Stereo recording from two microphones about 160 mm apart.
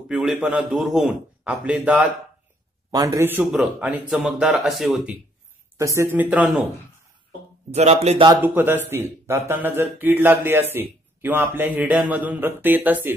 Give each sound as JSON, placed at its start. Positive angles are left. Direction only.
{"t": 0.1, "sound": "speech", "side_deg": -5}
{"t": 2.9, "sound": "speech", "side_deg": -20}
{"t": 5.8, "sound": "speech", "side_deg": -20}
{"t": 7.7, "sound": "speech", "side_deg": -40}
{"t": 8.4, "sound": "speech", "side_deg": -10}